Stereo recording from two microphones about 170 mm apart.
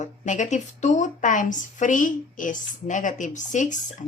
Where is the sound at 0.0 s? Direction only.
45° left (ahead or behind).